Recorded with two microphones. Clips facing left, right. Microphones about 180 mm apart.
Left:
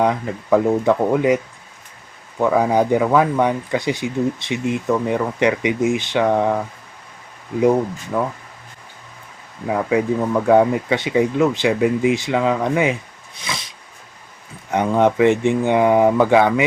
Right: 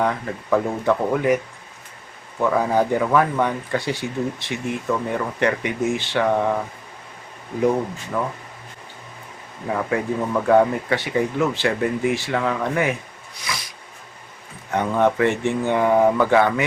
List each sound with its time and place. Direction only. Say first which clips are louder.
0.0 s speech: left 4 dB; 15° left (ahead or behind)
2.4 s speech: left 3 dB; 15° left (ahead or behind)
9.6 s speech: left 4 dB; 10° left (ahead or behind)